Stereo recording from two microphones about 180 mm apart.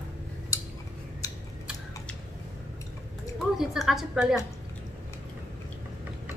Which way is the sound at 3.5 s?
Centre (ahead or behind).